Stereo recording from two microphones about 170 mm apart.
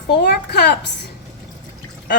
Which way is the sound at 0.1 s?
75° left (ahead or behind).